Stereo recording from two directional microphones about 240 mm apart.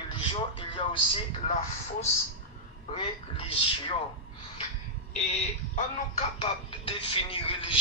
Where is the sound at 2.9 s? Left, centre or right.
Left.